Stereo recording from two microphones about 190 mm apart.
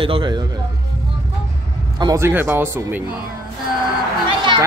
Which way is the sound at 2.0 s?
15° right (ahead or behind).